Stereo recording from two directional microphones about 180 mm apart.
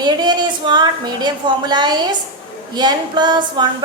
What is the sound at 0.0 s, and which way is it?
A woman's voice, 25° right (ahead or behind).